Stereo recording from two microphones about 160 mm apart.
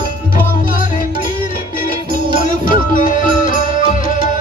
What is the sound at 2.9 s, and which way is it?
Music, 55° left (ahead or behind).